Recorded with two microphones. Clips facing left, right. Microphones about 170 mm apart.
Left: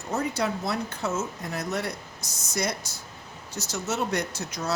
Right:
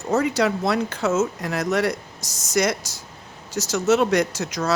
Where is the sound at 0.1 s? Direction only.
90° right.